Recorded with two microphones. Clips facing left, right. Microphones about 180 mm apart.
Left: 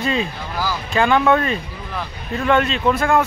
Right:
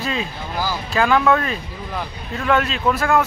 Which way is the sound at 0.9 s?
Centre (ahead or behind).